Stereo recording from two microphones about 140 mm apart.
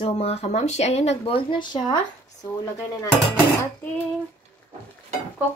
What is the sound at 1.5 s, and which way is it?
Speech, 30° left (ahead or behind).